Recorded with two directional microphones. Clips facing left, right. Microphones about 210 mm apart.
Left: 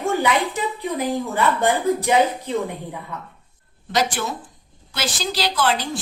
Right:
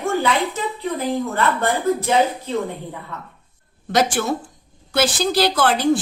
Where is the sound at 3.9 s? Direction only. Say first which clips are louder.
Right 4 dB; 55° right (ahead or behind).